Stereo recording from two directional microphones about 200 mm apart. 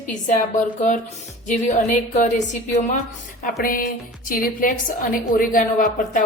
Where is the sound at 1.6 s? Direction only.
35° left (ahead or behind).